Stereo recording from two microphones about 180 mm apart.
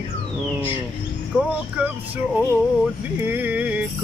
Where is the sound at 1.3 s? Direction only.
10° right (ahead or behind).